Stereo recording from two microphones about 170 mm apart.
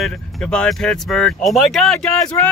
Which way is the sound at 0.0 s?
5° left (ahead or behind).